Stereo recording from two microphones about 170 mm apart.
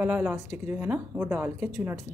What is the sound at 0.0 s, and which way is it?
A woman's voice, 10° right (ahead or behind).